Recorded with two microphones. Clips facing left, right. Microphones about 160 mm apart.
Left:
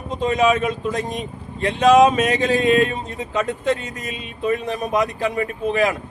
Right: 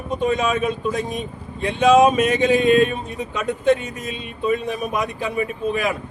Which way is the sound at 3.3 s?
90° left.